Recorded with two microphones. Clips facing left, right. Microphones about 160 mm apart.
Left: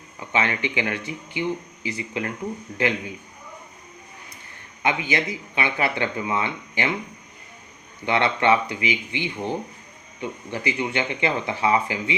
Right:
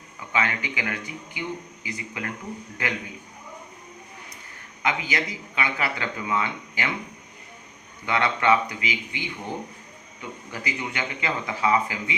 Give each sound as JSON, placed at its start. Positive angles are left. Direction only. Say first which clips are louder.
{"t": 0.3, "sound": "speech", "louder": "left 3 dB", "side_deg": 25}
{"t": 4.8, "sound": "speech", "louder": "left 3 dB", "side_deg": 25}
{"t": 8.0, "sound": "speech", "louder": "left 2 dB", "side_deg": 25}